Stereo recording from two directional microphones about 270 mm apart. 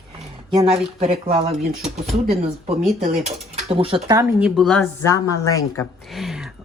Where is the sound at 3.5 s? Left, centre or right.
Right.